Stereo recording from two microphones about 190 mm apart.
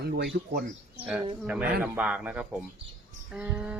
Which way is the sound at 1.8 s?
5° right (ahead or behind).